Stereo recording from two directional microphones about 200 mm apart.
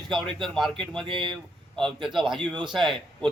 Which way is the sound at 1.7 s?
Centre (ahead or behind).